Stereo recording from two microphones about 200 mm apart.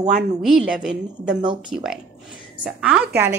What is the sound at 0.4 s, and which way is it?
A woman's voice, centre (ahead or behind).